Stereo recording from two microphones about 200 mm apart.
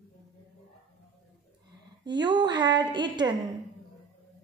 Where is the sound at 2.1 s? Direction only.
20° right (ahead or behind).